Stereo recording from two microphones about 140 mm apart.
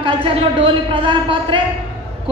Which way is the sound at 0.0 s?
40° right (ahead or behind).